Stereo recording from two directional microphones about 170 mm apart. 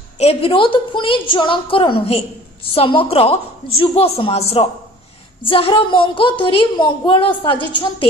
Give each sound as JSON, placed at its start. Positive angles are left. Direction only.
{"t": 0.2, "sound": "a woman's voice", "side_deg": 35}